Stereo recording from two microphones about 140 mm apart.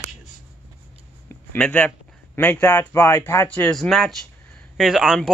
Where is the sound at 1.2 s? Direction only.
10° left (ahead or behind).